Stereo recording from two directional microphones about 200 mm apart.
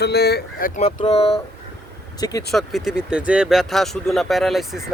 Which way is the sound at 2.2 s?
20° left (ahead or behind).